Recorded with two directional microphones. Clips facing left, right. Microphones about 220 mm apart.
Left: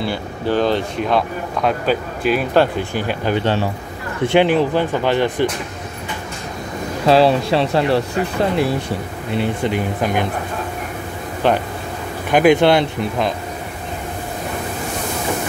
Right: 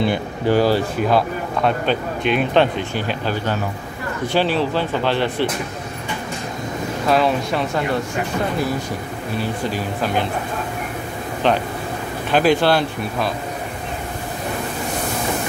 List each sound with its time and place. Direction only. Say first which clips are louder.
0.0 s speech: right 3 dB; 15° right (ahead or behind); by 5.5 s 15° left (ahead or behind)
7.1 s speech: left 5 dB; 30° left (ahead or behind)
9.3 s speech: left 4 dB; 20° left (ahead or behind)
11.4 s speech: left 1 dB; 10° left (ahead or behind)